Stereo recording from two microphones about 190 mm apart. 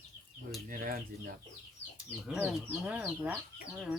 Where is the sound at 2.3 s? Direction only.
5° right (ahead or behind).